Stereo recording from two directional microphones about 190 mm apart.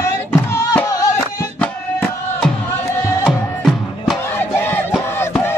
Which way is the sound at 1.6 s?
5° left (ahead or behind).